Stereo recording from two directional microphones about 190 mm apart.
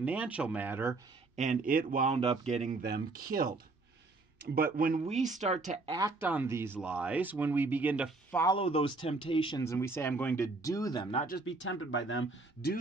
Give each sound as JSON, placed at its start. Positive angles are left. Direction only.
{"t": 0.0, "sound": "speech", "side_deg": -10}
{"t": 1.3, "sound": "speech", "side_deg": -40}
{"t": 2.1, "sound": "speech", "side_deg": -35}
{"t": 2.8, "sound": "speech", "side_deg": -55}
{"t": 4.6, "sound": "speech", "side_deg": -50}
{"t": 5.9, "sound": "speech", "side_deg": -20}
{"t": 8.5, "sound": "speech", "side_deg": 30}
{"t": 9.6, "sound": "speech", "side_deg": 15}
{"t": 11.4, "sound": "speech", "side_deg": 80}